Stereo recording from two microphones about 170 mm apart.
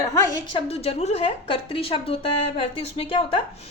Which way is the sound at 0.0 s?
20° left (ahead or behind).